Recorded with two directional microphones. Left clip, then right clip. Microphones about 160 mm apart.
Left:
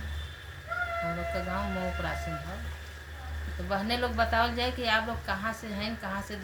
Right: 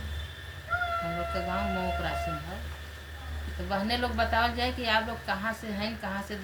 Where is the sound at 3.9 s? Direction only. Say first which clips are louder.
Even; 20° left (ahead or behind).